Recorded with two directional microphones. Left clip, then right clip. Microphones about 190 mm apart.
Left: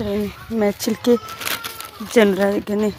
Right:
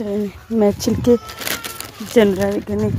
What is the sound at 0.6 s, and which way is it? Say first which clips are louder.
Speech: right 3 dB; 25° right (ahead or behind).